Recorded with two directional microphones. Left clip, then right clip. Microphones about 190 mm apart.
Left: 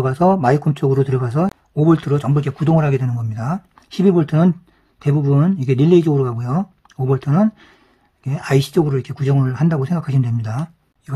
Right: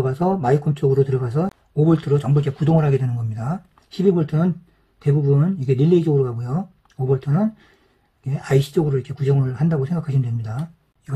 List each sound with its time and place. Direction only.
0.0 s speech: 30° left (ahead or behind)